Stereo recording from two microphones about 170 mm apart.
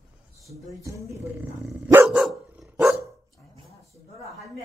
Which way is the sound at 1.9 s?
15° right (ahead or behind).